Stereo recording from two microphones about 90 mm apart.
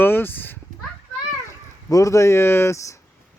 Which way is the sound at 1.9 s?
40° left (ahead or behind).